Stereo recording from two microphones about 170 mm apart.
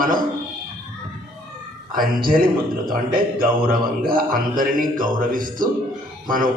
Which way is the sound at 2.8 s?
60° right (ahead or behind).